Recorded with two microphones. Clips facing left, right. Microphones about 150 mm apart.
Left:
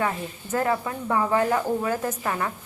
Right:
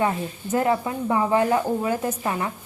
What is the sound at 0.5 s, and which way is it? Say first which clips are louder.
A woman's voice: right 3 dB; 20° right (ahead or behind).